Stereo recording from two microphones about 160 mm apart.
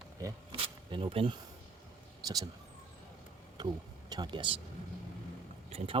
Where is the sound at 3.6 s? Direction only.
25° right (ahead or behind).